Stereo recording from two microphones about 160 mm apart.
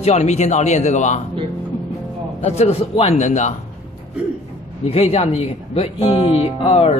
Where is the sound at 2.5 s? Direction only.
40° left (ahead or behind).